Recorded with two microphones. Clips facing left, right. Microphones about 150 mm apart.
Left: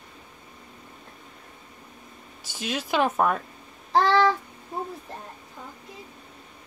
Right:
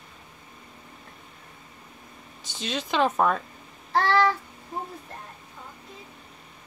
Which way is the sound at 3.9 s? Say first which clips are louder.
Left 2 dB; 20° left (ahead or behind).